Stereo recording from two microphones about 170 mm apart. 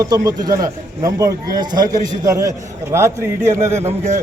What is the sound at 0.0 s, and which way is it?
A man's voice, 25° right (ahead or behind).